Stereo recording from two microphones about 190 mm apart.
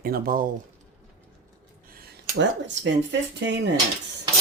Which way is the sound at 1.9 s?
50° right (ahead or behind).